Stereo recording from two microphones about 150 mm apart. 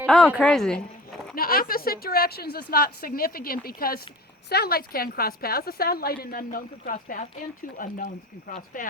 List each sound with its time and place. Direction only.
0.3 s speech: 5° left (ahead or behind)
1.4 s a woman's voice: 75° left (ahead or behind); by 8.9 s 60° left (ahead or behind)